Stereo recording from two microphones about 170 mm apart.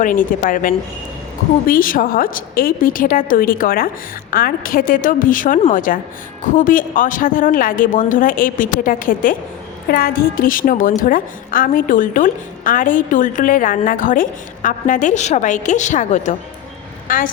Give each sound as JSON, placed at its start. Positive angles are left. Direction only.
{"t": 0.0, "sound": "a woman's voice", "side_deg": 50}